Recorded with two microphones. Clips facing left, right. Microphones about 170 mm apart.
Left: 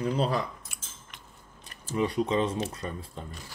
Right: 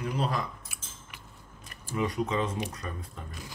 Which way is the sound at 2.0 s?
30° left (ahead or behind).